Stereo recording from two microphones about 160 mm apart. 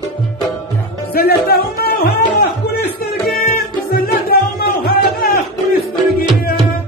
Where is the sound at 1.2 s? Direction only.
75° left (ahead or behind).